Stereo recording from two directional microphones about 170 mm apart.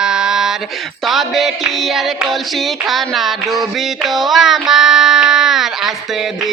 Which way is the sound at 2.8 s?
Centre (ahead or behind).